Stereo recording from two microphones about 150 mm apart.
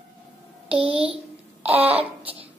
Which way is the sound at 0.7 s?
40° right (ahead or behind).